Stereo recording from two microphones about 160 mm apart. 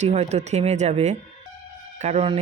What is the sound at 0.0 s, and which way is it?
Speech, 45° right (ahead or behind).